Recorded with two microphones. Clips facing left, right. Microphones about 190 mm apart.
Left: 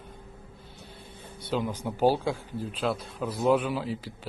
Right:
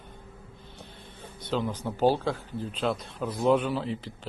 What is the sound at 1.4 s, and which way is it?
A man's voice, 10° left (ahead or behind).